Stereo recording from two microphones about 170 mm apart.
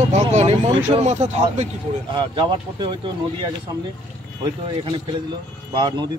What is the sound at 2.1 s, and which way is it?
Speech, 30° right (ahead or behind).